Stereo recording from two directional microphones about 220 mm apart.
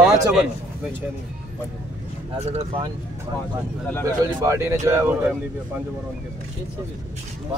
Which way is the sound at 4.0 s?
15° right (ahead or behind).